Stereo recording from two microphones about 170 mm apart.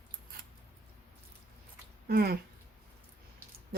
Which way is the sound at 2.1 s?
65° right (ahead or behind).